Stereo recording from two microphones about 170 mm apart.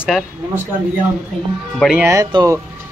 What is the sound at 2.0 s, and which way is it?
Speech, 20° right (ahead or behind).